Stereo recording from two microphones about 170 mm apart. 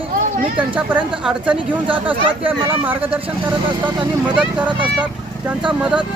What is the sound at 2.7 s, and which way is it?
Speech, 10° right (ahead or behind).